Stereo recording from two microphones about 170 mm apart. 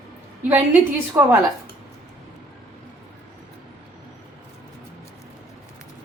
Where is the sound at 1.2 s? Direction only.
15° right (ahead or behind).